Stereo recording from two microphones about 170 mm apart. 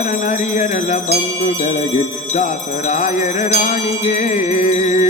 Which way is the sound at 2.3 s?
45° left (ahead or behind).